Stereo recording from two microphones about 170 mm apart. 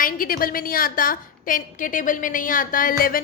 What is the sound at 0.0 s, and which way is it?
A woman's voice, 55° left (ahead or behind).